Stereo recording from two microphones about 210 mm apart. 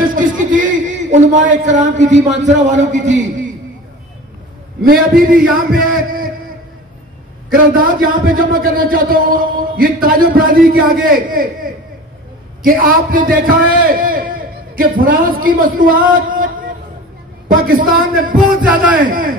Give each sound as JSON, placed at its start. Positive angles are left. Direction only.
{"t": 0.1, "sound": "a sound", "side_deg": -40}
{"t": 1.1, "sound": "a man's voice", "side_deg": -35}
{"t": 4.8, "sound": "a man's voice", "side_deg": -45}
{"t": 7.4, "sound": "a man's voice", "side_deg": -45}
{"t": 17.5, "sound": "a man's voice", "side_deg": -45}
{"t": 18.6, "sound": "speech", "side_deg": -5}
{"t": 18.9, "sound": "a man's voice", "side_deg": -45}